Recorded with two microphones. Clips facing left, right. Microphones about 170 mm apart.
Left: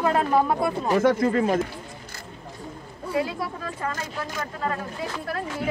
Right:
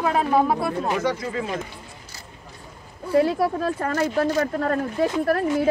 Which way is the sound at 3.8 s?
50° right (ahead or behind).